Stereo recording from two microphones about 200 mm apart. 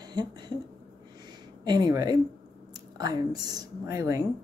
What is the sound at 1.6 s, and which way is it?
A woman's voice, 20° right (ahead or behind).